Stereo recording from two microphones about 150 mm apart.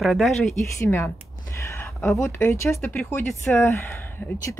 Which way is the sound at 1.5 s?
20° left (ahead or behind).